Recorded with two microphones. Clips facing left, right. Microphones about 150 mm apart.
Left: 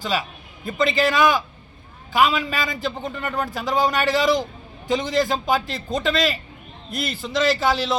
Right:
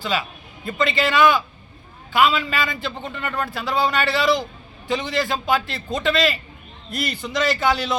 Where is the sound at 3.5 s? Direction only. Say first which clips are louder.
Left 1 dB; 40° left (ahead or behind).